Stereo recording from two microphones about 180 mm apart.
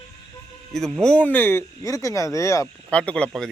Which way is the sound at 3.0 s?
5° left (ahead or behind).